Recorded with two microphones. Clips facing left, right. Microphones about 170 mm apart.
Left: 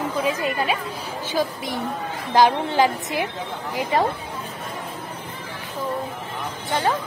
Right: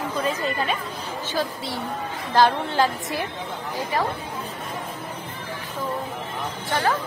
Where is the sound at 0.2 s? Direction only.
10° left (ahead or behind).